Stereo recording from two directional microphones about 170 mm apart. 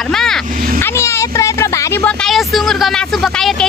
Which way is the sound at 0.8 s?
15° left (ahead or behind).